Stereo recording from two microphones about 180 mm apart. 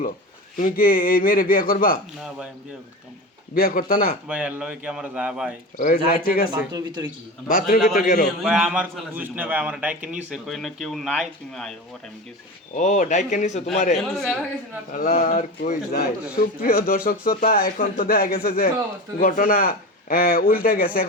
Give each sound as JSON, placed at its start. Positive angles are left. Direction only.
{"t": 0.5, "sound": "speech", "side_deg": 50}
{"t": 3.5, "sound": "speech", "side_deg": 55}
{"t": 4.3, "sound": "speech", "side_deg": -5}
{"t": 5.7, "sound": "speech", "side_deg": 50}
{"t": 6.7, "sound": "a man's voice", "side_deg": -25}
{"t": 7.4, "sound": "speech", "side_deg": 50}
{"t": 7.8, "sound": "a man's voice", "side_deg": 0}
{"t": 8.0, "sound": "speech", "side_deg": 50}
{"t": 8.4, "sound": "a man's voice", "side_deg": -5}
{"t": 12.7, "sound": "speech", "side_deg": 40}
{"t": 13.9, "sound": "a man's voice", "side_deg": 0}
{"t": 14.9, "sound": "speech", "side_deg": 45}
{"t": 16.6, "sound": "speech", "side_deg": 55}